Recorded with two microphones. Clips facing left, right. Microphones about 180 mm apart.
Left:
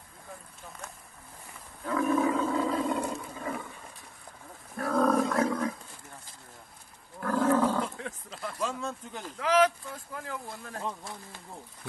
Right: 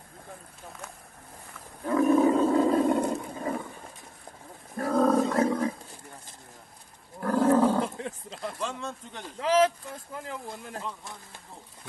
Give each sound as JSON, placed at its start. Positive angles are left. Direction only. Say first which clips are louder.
{"t": 1.9, "sound": "roar", "louder": "right 5 dB", "side_deg": -30}
{"t": 2.5, "sound": "roar", "louder": "right 6 dB", "side_deg": -45}
{"t": 4.7, "sound": "wild animals", "louder": "right 2 dB", "side_deg": -25}
{"t": 7.2, "sound": "roaring cats", "louder": "right 3 dB", "side_deg": -30}
{"t": 7.7, "sound": "wild animals", "louder": "right 4 dB", "side_deg": -30}
{"t": 8.5, "sound": "speech", "louder": "left 5 dB", "side_deg": 5}
{"t": 9.4, "sound": "speech", "louder": "right 1 dB", "side_deg": -30}